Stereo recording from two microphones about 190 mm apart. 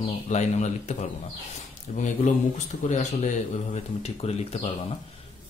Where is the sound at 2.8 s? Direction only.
40° left (ahead or behind).